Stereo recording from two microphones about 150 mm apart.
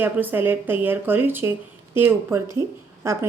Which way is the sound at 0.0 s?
15° right (ahead or behind).